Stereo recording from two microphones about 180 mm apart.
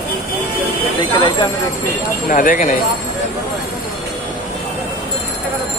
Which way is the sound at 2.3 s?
45° left (ahead or behind).